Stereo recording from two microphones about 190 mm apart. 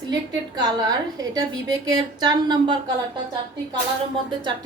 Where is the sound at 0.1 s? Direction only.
20° right (ahead or behind).